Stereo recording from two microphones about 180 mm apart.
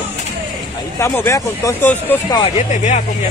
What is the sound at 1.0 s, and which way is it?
Speech, 15° left (ahead or behind).